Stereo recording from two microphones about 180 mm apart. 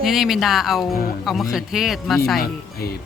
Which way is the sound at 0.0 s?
Centre (ahead or behind).